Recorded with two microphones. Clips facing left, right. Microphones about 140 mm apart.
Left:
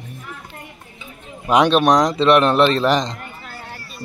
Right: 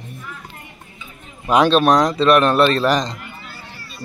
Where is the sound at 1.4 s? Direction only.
15° left (ahead or behind).